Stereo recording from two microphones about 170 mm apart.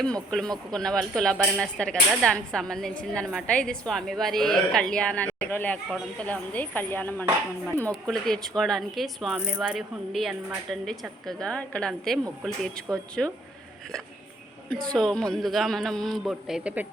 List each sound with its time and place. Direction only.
0.0 s a woman's voice: 5° left (ahead or behind)
14.9 s a woman's voice: 5° left (ahead or behind)